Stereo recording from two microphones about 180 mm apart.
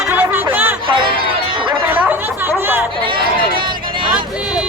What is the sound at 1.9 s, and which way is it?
Chatter, 10° right (ahead or behind).